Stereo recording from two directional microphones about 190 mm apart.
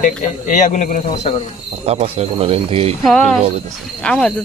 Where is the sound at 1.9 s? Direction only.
35° right (ahead or behind).